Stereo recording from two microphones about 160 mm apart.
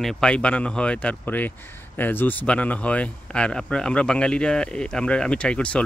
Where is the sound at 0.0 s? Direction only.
5° left (ahead or behind).